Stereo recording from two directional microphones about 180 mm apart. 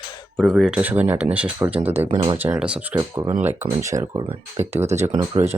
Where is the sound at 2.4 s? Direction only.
10° right (ahead or behind).